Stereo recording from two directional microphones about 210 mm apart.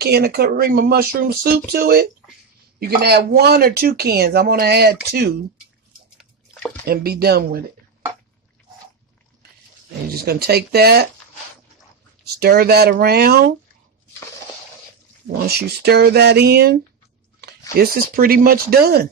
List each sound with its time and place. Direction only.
0.0 s speech: 50° right (ahead or behind)
6.1 s bathtub: centre (ahead or behind)
6.9 s speech: 50° right (ahead or behind)
10.0 s speech: 45° right (ahead or behind)
12.4 s speech: 50° right (ahead or behind)
15.2 s speech: 50° right (ahead or behind)